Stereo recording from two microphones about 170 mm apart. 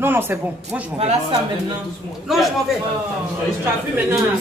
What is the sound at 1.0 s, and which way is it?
Speech, 25° right (ahead or behind).